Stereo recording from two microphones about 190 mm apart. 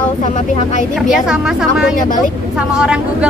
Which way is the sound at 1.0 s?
Centre (ahead or behind).